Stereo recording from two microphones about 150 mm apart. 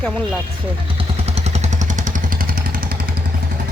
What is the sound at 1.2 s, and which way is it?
Vehicle, 45° right (ahead or behind).